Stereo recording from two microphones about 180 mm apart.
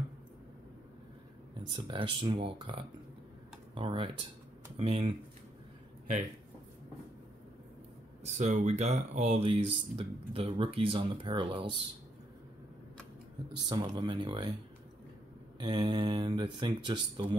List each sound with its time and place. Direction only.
1.6 s speech: 25° right (ahead or behind)
8.2 s speech: 35° right (ahead or behind)
13.7 s speech: 25° right (ahead or behind)
15.6 s speech: 25° right (ahead or behind)